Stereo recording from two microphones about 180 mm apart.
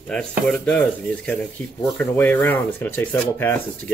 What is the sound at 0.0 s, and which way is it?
Speech, 5° left (ahead or behind).